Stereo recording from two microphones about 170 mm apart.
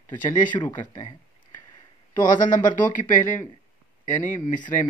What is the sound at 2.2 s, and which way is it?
Speech, 50° left (ahead or behind).